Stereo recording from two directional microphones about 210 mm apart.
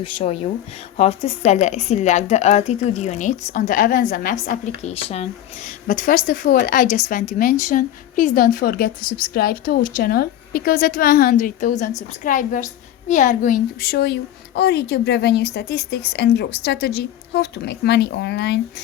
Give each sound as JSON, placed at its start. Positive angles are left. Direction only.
{"t": 0.0, "sound": "a woman's voice", "side_deg": 25}